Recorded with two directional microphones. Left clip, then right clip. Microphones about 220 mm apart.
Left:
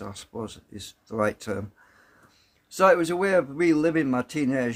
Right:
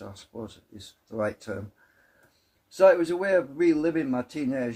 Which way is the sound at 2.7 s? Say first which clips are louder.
Even; 40° left (ahead or behind).